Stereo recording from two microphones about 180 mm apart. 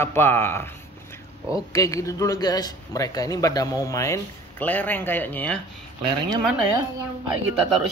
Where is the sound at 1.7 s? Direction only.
20° left (ahead or behind).